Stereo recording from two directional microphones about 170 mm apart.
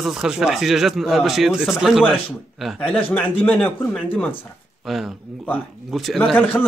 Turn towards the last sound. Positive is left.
turn(degrees=5)  # may be behind; listen again after turning